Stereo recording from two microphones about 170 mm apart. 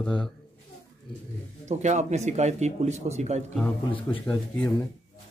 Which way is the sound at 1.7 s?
45° right (ahead or behind).